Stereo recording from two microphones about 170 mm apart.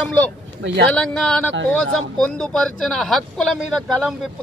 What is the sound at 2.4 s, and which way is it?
Speech, 5° left (ahead or behind).